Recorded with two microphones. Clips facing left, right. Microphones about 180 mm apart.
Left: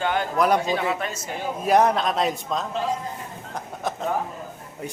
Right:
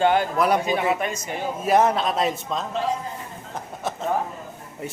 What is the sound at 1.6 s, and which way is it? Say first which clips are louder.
Speech: even; centre (ahead or behind).